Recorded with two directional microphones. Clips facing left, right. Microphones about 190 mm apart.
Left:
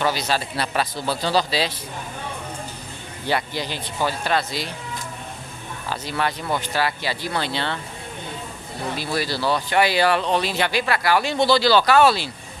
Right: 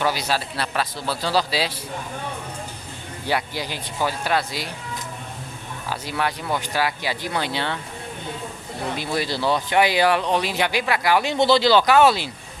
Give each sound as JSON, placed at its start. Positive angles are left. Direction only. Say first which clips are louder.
{"t": 0.0, "sound": "speech", "louder": "left 1 dB", "side_deg": -10}
{"t": 3.3, "sound": "speech", "louder": "left 1 dB", "side_deg": -10}
{"t": 5.9, "sound": "speech", "louder": "even", "side_deg": -10}
{"t": 8.9, "sound": "speech", "louder": "even", "side_deg": -20}